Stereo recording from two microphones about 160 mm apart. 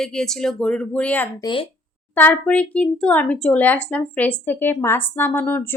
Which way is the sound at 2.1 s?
10° left (ahead or behind).